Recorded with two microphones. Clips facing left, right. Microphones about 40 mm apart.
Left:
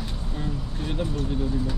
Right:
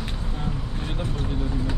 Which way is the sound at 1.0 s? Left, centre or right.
Right.